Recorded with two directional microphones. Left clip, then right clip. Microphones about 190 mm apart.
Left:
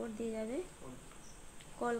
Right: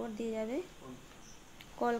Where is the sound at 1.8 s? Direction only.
40° right (ahead or behind).